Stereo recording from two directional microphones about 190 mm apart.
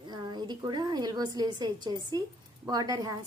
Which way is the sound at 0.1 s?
25° right (ahead or behind).